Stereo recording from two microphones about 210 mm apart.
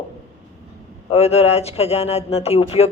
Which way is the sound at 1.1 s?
30° left (ahead or behind).